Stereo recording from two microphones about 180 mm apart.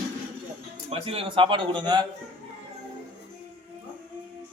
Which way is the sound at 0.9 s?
30° right (ahead or behind).